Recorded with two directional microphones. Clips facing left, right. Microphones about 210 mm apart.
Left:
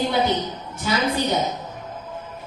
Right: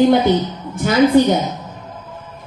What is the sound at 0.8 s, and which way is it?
Speech, 50° right (ahead or behind).